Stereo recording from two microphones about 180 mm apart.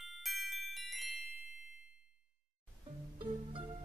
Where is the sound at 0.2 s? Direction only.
Centre (ahead or behind).